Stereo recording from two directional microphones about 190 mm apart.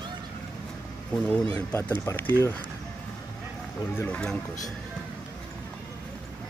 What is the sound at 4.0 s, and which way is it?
Speech, 5° left (ahead or behind).